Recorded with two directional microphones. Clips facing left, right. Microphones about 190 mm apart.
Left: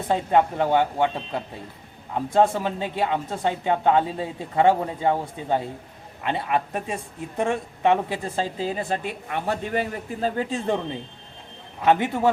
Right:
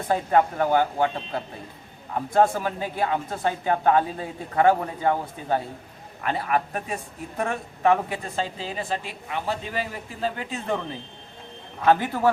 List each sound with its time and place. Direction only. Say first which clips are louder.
0.1 s speech: left 1 dB; 20° left (ahead or behind)
8.6 s a man's voice: left 4 dB; 50° left (ahead or behind)
10.5 s speech: left 3 dB; 25° left (ahead or behind)